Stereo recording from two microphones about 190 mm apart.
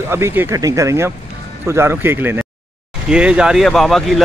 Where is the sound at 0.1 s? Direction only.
10° right (ahead or behind).